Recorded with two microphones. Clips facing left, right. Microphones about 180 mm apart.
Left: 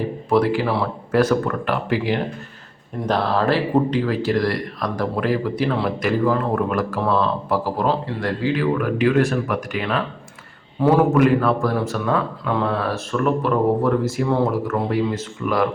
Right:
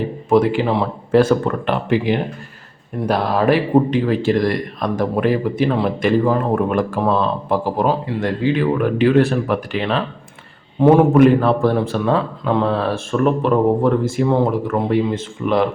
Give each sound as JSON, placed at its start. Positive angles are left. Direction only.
{"t": 0.3, "sound": "speech", "side_deg": -20}